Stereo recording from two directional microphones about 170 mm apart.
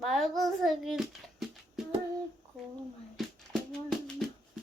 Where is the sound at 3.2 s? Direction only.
Centre (ahead or behind).